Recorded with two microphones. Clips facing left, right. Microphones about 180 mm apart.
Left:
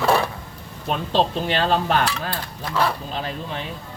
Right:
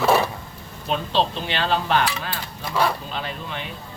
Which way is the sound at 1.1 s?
45° left (ahead or behind).